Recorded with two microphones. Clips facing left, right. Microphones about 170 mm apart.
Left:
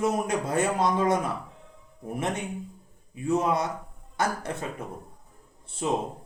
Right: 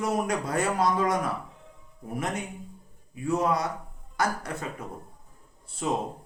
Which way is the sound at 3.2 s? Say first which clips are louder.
Left 1 dB; 25° left (ahead or behind).